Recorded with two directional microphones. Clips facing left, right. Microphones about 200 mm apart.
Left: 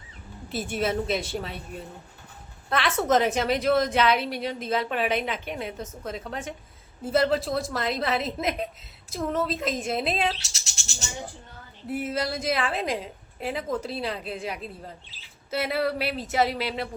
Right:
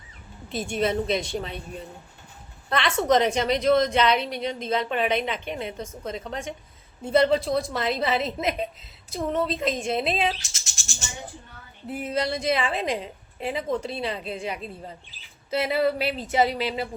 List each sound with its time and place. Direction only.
0.5 s a woman's voice: 5° left (ahead or behind)
11.9 s a woman's voice: 5° left (ahead or behind)